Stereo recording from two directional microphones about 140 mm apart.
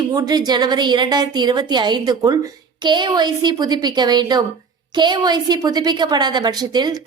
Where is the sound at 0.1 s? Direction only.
30° right (ahead or behind).